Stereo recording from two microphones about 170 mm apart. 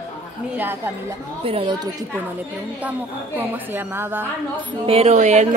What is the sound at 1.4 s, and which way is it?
Speech, 35° right (ahead or behind).